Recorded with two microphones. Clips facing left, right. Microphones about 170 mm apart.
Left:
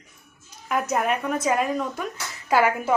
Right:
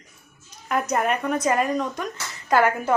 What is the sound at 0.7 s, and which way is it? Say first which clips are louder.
A woman's voice: right 1 dB; centre (ahead or behind).